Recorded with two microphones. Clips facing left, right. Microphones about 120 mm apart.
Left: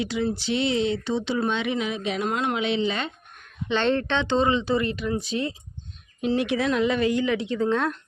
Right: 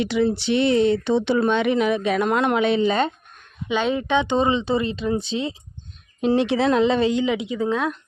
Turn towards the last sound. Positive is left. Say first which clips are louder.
# right 1 dB
turn(degrees=-5)  # may be behind; listen again after turning